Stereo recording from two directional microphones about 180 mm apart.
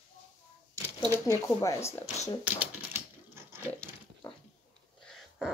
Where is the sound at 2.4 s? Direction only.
15° right (ahead or behind).